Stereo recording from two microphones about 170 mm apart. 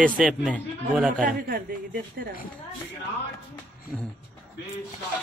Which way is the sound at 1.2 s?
60° right (ahead or behind).